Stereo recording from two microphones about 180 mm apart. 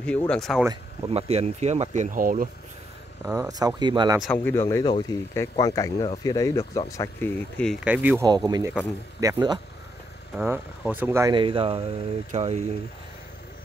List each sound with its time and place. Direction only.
0.3 s speech: centre (ahead or behind)
1.0 s speech: 35° right (ahead or behind); by 2.5 s 50° right (ahead or behind)
3.3 s speech: 15° right (ahead or behind)
4.2 s speech: 10° left (ahead or behind)
7.8 s speech: 10° right (ahead or behind)
8.5 s speech: 20° right (ahead or behind)
10.3 s speech: 5° right (ahead or behind)
11.3 s speech: 30° right (ahead or behind)